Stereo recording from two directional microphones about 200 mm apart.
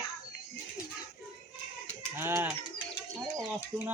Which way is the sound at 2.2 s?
10° right (ahead or behind).